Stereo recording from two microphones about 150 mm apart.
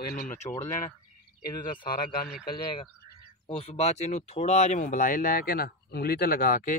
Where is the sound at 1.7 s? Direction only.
35° left (ahead or behind).